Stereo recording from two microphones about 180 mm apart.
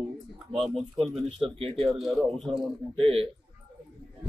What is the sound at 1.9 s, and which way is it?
Speech, centre (ahead or behind).